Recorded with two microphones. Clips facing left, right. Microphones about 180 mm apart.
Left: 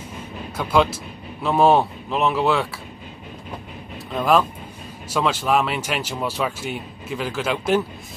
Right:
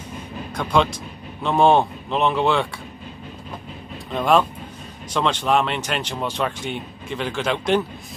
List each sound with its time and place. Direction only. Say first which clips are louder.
0.6 s speech: left 1 dB; 5° left (ahead or behind)
4.1 s speech: even; centre (ahead or behind)